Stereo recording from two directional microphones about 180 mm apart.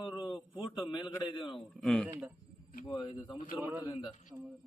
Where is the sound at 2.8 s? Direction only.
25° left (ahead or behind).